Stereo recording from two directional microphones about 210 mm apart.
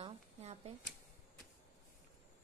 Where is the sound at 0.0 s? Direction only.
30° right (ahead or behind).